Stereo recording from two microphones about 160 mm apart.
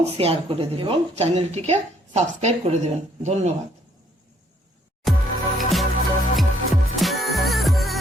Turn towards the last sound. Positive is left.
turn(degrees=0)  # may be behind; listen again after turning